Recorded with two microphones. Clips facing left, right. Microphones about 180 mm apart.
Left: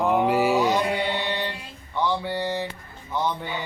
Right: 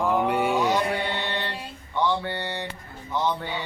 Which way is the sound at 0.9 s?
15° left (ahead or behind).